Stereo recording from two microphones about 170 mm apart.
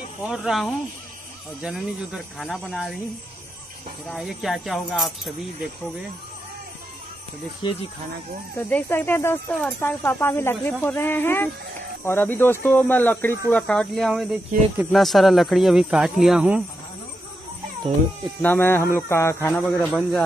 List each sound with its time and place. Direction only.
0.2 s speech: 5° right (ahead or behind)
4.1 s speech: centre (ahead or behind)
7.6 s speech: 30° left (ahead or behind)
8.5 s speech: 10° left (ahead or behind); by 16.6 s 5° right (ahead or behind)
18.4 s speech: 10° left (ahead or behind)
19.9 s speech: centre (ahead or behind)